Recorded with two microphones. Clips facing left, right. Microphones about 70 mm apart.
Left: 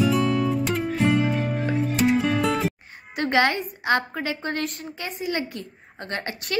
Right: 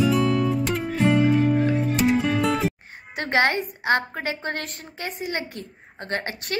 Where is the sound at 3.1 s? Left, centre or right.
Right.